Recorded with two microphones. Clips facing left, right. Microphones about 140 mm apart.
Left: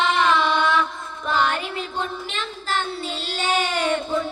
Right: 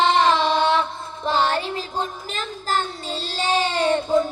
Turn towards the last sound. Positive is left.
turn(degrees=-35)  # may be behind; listen again after turning